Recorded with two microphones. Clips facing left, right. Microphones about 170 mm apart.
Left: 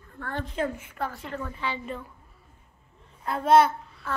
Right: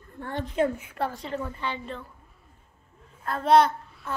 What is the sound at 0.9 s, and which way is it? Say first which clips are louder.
Speech: right 3 dB; 35° right (ahead or behind).